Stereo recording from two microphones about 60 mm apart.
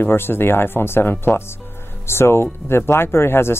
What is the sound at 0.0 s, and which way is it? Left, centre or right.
Speech, left.